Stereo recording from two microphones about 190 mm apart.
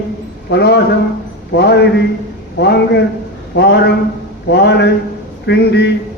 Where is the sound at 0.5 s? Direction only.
60° left (ahead or behind).